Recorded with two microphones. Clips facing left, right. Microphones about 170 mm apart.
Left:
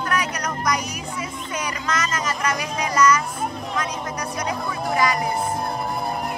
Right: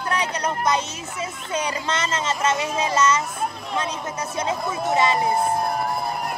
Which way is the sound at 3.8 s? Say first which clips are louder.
Right 1 dB; 25° right (ahead or behind).